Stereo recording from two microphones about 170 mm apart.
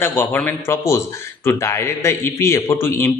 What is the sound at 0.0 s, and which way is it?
A man's voice, 10° left (ahead or behind).